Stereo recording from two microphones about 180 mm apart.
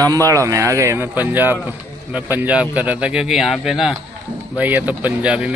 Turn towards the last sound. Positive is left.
turn(degrees=-5)  # may be behind; listen again after turning